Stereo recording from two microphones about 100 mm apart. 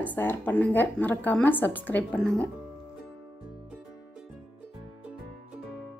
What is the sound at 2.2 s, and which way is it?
Speech, 5° left (ahead or behind).